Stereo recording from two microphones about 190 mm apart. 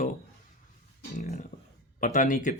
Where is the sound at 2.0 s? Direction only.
45° left (ahead or behind).